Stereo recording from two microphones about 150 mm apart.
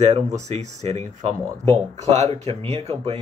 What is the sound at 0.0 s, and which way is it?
Speech, 50° right (ahead or behind).